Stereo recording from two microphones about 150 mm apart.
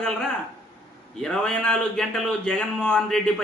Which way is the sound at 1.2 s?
5° left (ahead or behind).